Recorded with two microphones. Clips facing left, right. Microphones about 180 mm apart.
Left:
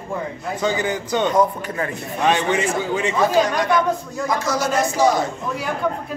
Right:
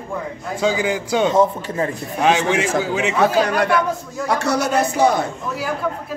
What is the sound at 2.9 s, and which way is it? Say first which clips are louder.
Speech: right 1 dB; 80° right.